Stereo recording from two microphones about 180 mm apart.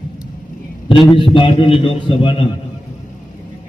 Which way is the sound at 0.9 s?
30° left (ahead or behind).